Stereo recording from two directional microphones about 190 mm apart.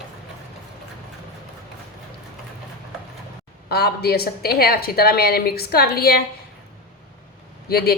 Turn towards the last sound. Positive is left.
turn(degrees=55)  # may be behind; listen again after turning